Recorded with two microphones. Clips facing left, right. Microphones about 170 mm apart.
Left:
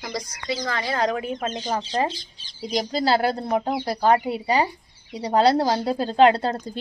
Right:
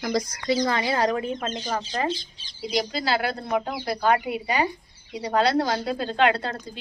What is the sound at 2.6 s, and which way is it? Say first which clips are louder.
A woman's voice: left 3 dB; 40° left (ahead or behind).